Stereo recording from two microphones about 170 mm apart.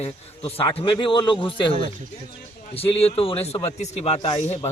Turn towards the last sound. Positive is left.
turn(degrees=40)  # may be behind; listen again after turning